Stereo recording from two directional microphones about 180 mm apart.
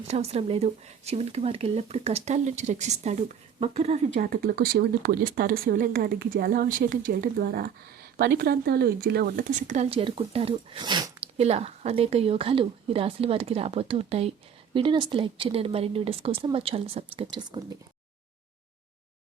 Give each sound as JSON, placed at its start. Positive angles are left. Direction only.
{"t": 0.1, "sound": "speech", "side_deg": -35}
{"t": 11.4, "sound": "speech", "side_deg": -35}